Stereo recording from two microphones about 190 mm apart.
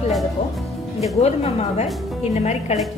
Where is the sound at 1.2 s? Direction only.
35° left (ahead or behind).